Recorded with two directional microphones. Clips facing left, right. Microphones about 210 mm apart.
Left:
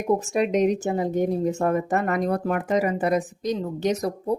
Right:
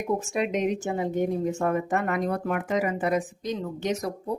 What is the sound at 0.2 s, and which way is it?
A woman's voice, 40° left (ahead or behind).